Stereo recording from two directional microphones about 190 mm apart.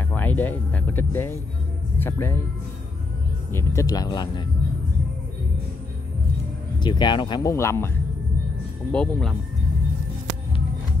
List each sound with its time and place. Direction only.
0.1 s speech: 10° left (ahead or behind)
3.5 s speech: 15° left (ahead or behind)
6.8 s speech: 25° left (ahead or behind)
8.9 s speech: 5° left (ahead or behind)